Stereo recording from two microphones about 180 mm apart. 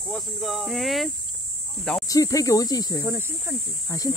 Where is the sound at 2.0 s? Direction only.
20° left (ahead or behind).